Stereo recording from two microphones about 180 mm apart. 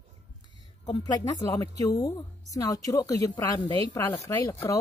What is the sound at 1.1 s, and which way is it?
A woman's voice, 20° left (ahead or behind).